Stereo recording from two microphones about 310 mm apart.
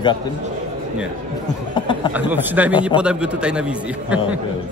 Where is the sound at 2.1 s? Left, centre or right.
Centre.